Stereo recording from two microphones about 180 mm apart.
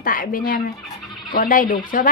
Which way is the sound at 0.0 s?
50° left (ahead or behind).